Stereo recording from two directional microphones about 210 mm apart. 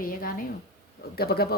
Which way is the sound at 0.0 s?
45° left (ahead or behind).